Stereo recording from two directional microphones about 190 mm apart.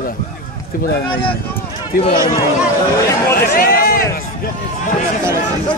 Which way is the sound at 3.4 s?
50° left (ahead or behind).